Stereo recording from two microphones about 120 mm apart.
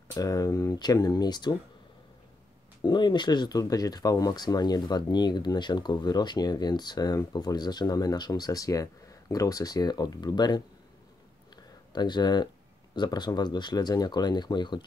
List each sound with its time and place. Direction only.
0.1 s speech: 30° left (ahead or behind)
2.8 s speech: 35° left (ahead or behind)
11.5 s a sound: 35° left (ahead or behind)
12.9 s speech: 35° left (ahead or behind)